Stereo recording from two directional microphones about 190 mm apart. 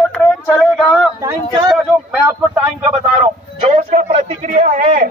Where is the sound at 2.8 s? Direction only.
35° right (ahead or behind).